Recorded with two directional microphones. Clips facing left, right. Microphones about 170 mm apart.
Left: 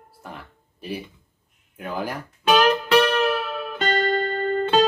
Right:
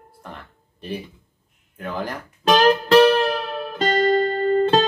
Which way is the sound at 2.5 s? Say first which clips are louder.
Right 2 dB; 35° right (ahead or behind).